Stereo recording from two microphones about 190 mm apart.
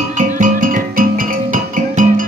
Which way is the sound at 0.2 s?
45° right (ahead or behind).